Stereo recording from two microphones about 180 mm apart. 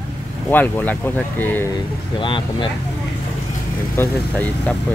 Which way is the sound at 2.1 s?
25° left (ahead or behind).